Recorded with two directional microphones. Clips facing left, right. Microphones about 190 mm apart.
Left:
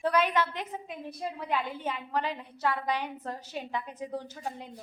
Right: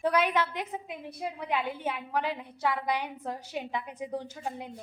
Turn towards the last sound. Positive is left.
turn(degrees=-10)  # may be behind; listen again after turning